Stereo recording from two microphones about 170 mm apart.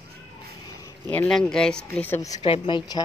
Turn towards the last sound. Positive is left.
turn(degrees=25)  # may be behind; listen again after turning